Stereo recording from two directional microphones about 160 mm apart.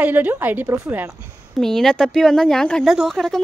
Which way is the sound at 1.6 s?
5° left (ahead or behind).